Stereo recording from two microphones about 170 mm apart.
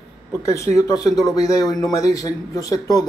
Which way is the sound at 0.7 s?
20° left (ahead or behind).